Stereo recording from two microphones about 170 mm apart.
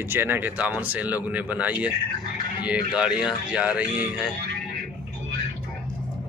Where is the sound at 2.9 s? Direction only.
5° right (ahead or behind).